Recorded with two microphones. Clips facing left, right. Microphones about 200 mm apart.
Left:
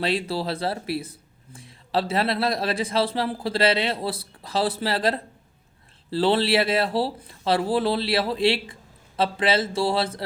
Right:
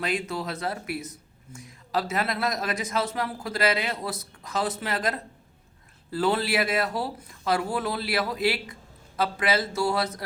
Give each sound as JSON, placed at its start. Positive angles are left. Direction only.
{"t": 0.0, "sound": "speech", "side_deg": 30}